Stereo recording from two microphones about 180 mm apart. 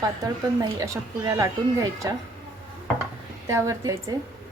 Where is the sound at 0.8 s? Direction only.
20° right (ahead or behind).